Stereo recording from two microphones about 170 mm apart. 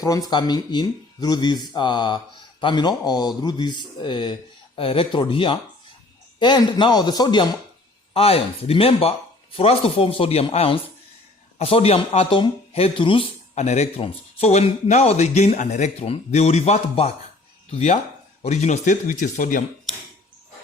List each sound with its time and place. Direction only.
0.0 s speech: 20° left (ahead or behind)
8.1 s speech: 35° left (ahead or behind); by 19.6 s 50° left (ahead or behind)